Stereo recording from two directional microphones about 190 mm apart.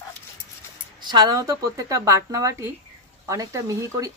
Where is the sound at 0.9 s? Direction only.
20° right (ahead or behind).